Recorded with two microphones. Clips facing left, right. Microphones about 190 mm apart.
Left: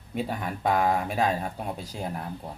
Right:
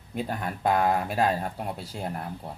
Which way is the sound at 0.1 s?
Centre (ahead or behind).